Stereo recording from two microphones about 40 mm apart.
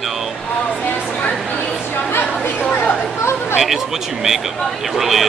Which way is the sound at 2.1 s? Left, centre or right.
Left.